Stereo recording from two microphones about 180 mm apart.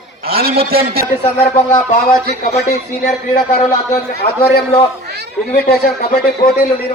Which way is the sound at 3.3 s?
55° left (ahead or behind).